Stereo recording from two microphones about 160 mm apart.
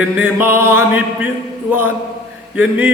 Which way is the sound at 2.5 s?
10° right (ahead or behind).